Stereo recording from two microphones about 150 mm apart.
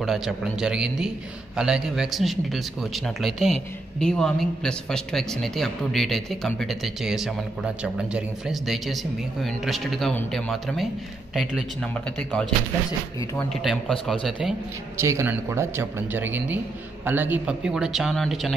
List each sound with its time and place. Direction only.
0.0 s speech: centre (ahead or behind)
11.9 s a man's voice: 10° left (ahead or behind)
15.0 s speech: 20° right (ahead or behind); by 18.5 s centre (ahead or behind)